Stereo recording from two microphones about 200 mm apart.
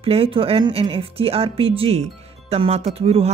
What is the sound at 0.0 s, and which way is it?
Speech, 30° right (ahead or behind).